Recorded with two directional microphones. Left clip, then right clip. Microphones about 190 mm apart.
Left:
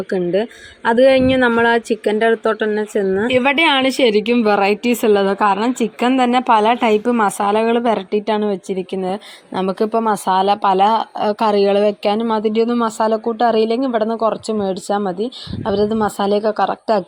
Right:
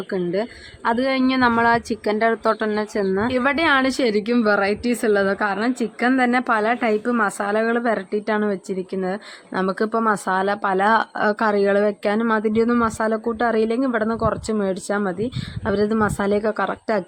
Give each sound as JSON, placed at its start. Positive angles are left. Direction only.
{"t": 0.1, "sound": "a woman's voice", "side_deg": 10}
{"t": 4.0, "sound": "a woman's voice", "side_deg": -25}
{"t": 4.4, "sound": "a woman's voice", "side_deg": 10}
{"t": 10.9, "sound": "speech", "side_deg": -5}